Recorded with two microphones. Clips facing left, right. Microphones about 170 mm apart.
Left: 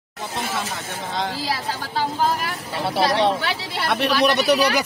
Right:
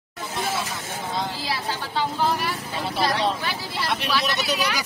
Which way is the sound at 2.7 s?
70° left (ahead or behind).